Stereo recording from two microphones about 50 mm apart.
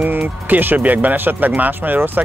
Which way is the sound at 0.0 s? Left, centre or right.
Right.